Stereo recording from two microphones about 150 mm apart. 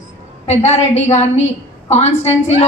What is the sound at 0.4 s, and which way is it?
A woman's voice, 45° left (ahead or behind).